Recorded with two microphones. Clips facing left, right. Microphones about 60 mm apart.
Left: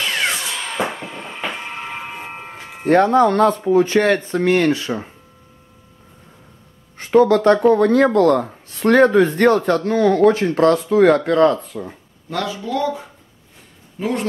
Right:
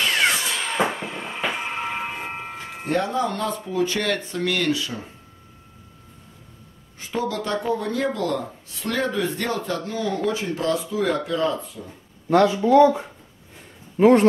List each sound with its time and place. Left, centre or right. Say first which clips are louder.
0.0 s music: even; centre
0.9 s a sound: even; centre
2.9 s speech: left 10 dB; left
7.0 s speech: left 13 dB; left
12.3 s speech: right 7 dB; right
13.9 s speech: right 8 dB; right